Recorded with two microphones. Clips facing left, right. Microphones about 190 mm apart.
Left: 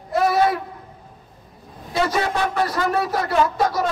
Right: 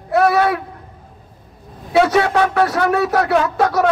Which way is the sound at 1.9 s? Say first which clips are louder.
Right 7 dB; 70° right (ahead or behind).